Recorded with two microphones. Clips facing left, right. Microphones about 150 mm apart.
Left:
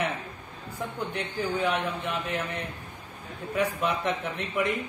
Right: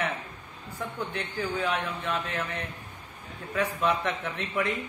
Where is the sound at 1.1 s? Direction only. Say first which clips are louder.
Left 3 dB; 15° left (ahead or behind).